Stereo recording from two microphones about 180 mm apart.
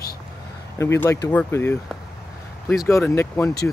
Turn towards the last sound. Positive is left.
turn(degrees=15)  # may be behind; listen again after turning